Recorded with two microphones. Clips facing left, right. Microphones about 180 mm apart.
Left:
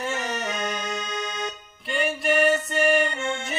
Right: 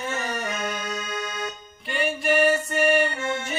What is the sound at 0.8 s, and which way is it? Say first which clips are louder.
Music: even; 20° left (ahead or behind).